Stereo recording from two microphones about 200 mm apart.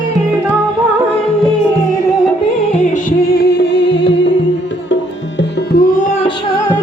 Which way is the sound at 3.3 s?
55° left (ahead or behind).